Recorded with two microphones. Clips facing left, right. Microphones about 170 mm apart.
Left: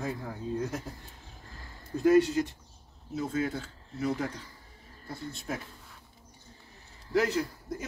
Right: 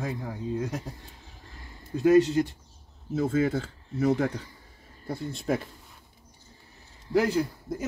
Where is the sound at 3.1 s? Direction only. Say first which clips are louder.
Right 6 dB; 50° right (ahead or behind).